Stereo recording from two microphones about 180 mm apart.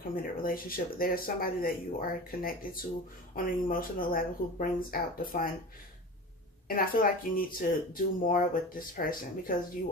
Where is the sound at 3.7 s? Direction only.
50° left (ahead or behind).